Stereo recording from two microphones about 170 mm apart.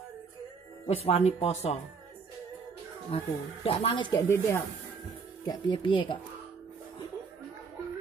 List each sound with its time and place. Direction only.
0.8 s speech: 40° left (ahead or behind)
3.1 s speech: 35° left (ahead or behind)
4.1 s speech: 15° left (ahead or behind)